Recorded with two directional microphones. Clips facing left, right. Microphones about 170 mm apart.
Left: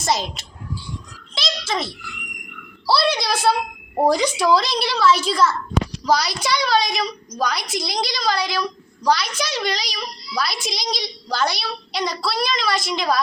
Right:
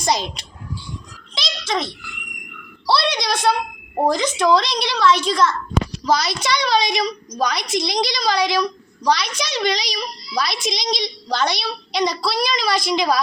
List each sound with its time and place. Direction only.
0.0 s a child's voice: centre (ahead or behind)